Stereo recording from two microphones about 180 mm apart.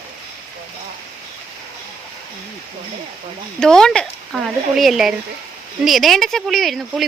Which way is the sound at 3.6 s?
5° left (ahead or behind).